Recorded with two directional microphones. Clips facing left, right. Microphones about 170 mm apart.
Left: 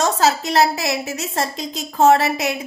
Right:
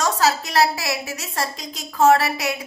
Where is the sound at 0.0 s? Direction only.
25° left (ahead or behind).